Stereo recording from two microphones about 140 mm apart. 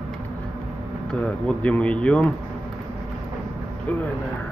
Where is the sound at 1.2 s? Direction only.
10° left (ahead or behind).